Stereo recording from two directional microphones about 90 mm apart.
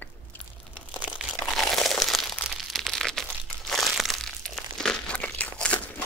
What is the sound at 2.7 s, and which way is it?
Crumpling, 5° left (ahead or behind).